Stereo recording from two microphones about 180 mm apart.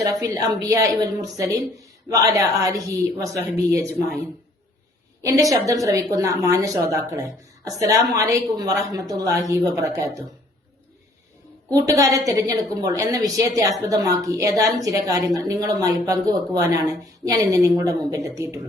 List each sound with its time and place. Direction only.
0.0 s a woman's voice: 20° right (ahead or behind)
5.2 s a woman's voice: 20° right (ahead or behind)
11.7 s a woman's voice: 20° right (ahead or behind)